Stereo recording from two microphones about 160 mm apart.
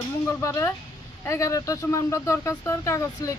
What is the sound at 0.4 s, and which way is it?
Speech, 20° left (ahead or behind).